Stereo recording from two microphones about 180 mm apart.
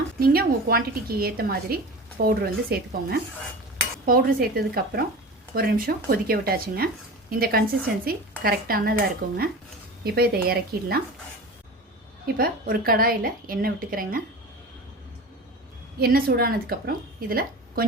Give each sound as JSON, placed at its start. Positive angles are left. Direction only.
{"t": 0.2, "sound": "a woman's voice", "side_deg": -60}
{"t": 12.4, "sound": "a woman's voice", "side_deg": -55}
{"t": 16.0, "sound": "a woman's voice", "side_deg": -60}